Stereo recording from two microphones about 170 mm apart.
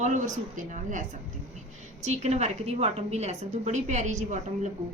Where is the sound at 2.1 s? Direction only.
40° right (ahead or behind).